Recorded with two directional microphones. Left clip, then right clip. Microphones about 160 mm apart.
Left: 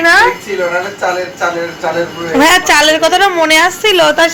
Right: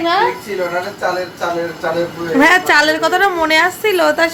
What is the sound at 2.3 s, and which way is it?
A woman's voice, centre (ahead or behind).